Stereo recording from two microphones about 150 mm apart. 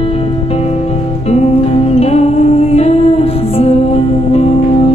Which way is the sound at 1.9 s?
45° left (ahead or behind).